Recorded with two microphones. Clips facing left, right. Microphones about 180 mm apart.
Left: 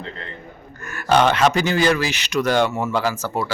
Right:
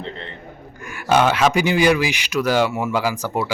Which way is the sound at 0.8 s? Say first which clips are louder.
Even; 10° right (ahead or behind).